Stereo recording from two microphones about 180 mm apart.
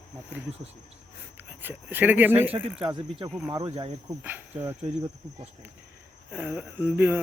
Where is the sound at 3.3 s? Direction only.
10° right (ahead or behind).